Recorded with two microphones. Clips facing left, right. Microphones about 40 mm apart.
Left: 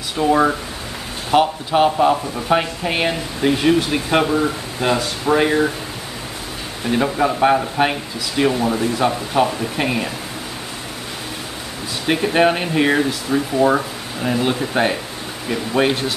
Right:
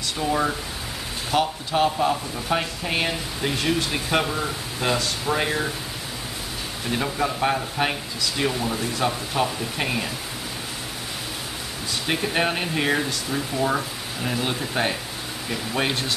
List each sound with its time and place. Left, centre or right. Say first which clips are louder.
0.2 s speech: left 8 dB; left
6.9 s speech: left 7 dB; centre
12.1 s speech: left 8 dB; centre